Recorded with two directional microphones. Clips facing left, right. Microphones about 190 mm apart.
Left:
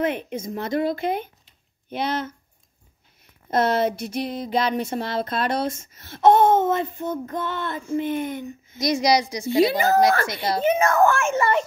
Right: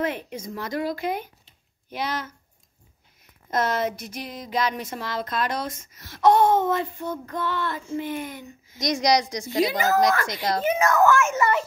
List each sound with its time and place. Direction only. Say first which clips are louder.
0.0 s speech: left 3 dB; 20° left (ahead or behind)
3.4 s speech: left 4 dB; 30° left (ahead or behind)
8.7 s a woman's voice: left 2 dB; 5° left (ahead or behind)
9.6 s speech: left 3 dB; 30° left (ahead or behind)